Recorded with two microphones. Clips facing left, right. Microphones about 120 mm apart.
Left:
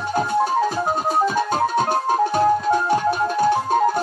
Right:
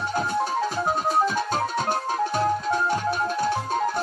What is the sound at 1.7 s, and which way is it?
Music, 50° left (ahead or behind).